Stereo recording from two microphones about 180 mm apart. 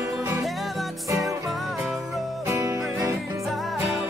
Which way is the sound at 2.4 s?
15° right (ahead or behind).